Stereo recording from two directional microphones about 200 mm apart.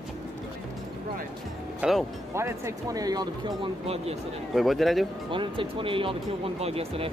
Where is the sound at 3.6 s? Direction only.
30° right (ahead or behind).